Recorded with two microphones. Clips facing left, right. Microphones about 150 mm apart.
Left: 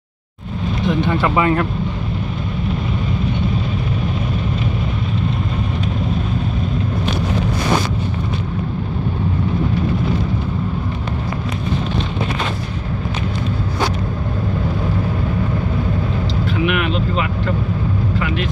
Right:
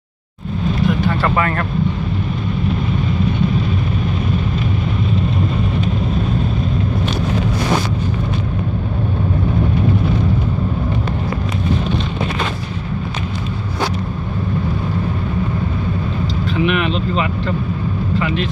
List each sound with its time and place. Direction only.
0.8 s vehicle: 20° left (ahead or behind)
1.2 s speech: 10° left (ahead or behind)
16.6 s vehicle: 5° left (ahead or behind)